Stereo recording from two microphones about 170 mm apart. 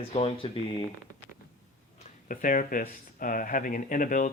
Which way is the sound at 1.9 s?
50° left (ahead or behind).